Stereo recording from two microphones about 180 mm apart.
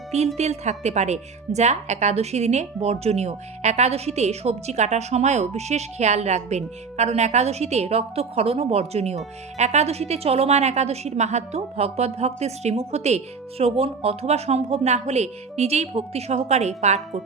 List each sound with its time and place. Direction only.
0.3 s speech: 40° right (ahead or behind)